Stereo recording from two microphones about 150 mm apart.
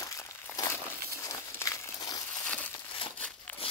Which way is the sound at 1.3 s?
20° left (ahead or behind).